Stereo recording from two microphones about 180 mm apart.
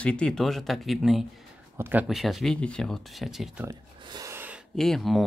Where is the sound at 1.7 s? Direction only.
10° right (ahead or behind).